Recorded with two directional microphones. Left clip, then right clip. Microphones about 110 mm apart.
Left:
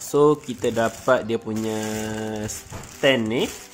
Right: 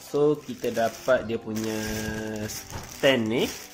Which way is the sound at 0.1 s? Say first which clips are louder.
Left 5 dB; 65° left (ahead or behind).